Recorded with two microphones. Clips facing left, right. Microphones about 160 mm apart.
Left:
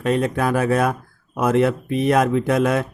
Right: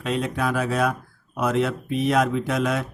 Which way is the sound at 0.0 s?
50° left (ahead or behind).